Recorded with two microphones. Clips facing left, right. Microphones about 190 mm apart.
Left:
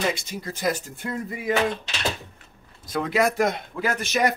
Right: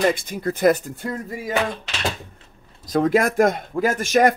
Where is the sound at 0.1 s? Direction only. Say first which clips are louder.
Right 7 dB; 55° right (ahead or behind).